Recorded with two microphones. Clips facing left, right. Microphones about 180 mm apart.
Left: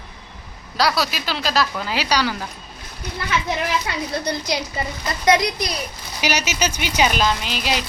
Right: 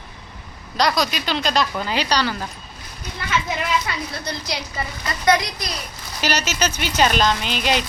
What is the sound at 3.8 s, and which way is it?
A woman's voice, 15° left (ahead or behind).